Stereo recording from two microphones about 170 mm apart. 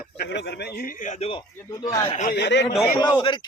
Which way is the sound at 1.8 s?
20° left (ahead or behind).